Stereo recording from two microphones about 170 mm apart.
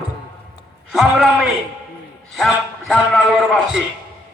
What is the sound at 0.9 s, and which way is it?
A man's voice, centre (ahead or behind).